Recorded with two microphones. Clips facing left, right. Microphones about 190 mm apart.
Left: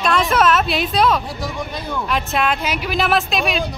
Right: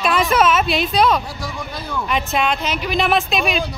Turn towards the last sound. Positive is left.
turn(degrees=0)  # may be behind; listen again after turning